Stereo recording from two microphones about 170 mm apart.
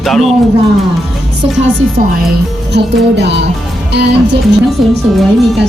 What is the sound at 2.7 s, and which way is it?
Music, 90° right.